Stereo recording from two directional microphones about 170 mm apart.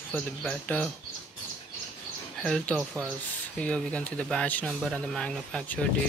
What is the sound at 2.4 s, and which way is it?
Speech, 5° left (ahead or behind).